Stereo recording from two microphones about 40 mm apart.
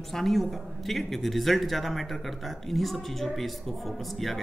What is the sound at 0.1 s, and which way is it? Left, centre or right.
Speech, centre.